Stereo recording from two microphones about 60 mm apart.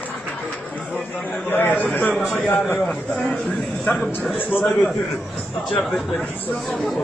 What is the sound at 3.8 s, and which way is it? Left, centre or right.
Speech, left.